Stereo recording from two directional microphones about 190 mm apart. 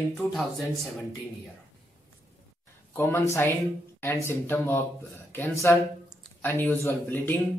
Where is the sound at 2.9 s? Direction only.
15° left (ahead or behind).